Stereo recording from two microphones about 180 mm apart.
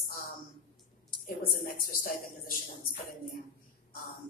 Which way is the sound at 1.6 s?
55° left (ahead or behind).